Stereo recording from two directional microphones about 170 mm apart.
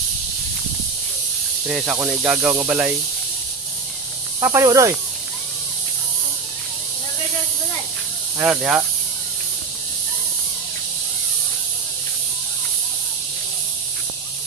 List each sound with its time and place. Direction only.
1.7 s speech: centre (ahead or behind)
2.5 s speech: 15° right (ahead or behind)
4.4 s speech: 15° right (ahead or behind)
8.4 s speech: 5° right (ahead or behind)